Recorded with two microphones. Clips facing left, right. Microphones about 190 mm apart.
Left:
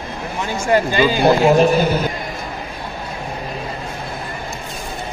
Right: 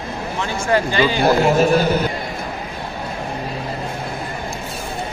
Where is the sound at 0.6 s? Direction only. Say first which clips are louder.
Left 2 dB; 15° left (ahead or behind).